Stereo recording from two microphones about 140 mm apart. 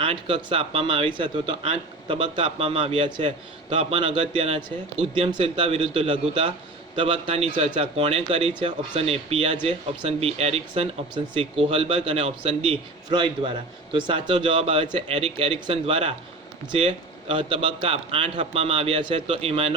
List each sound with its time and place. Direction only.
0.0 s speech: 40° right (ahead or behind)